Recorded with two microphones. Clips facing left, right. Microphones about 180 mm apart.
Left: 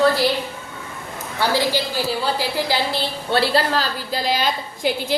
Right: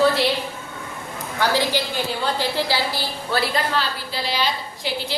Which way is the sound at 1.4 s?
10° left (ahead or behind).